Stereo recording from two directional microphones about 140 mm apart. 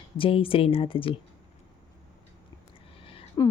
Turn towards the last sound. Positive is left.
turn(degrees=25)  # may be behind; listen again after turning